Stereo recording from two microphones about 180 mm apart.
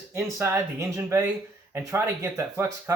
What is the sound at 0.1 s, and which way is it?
Speech, 15° right (ahead or behind).